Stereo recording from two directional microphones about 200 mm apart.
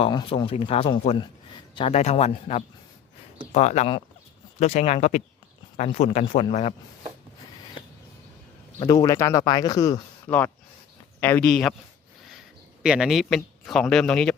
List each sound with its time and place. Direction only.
0.0 s a man's voice: 25° left (ahead or behind)
8.8 s speech: 20° left (ahead or behind); by 11.7 s 5° left (ahead or behind)
12.8 s speech: 5° right (ahead or behind)